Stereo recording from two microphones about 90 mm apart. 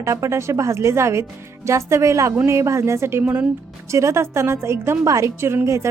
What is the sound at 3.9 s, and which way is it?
A woman's voice, 35° right (ahead or behind).